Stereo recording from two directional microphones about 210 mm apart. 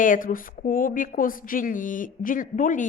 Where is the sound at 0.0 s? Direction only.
40° left (ahead or behind).